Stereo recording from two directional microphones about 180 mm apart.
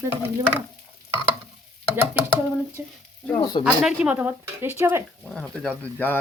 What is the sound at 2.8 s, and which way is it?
Speech, 10° right (ahead or behind).